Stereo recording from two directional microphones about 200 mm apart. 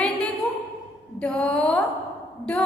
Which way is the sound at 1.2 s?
5° left (ahead or behind).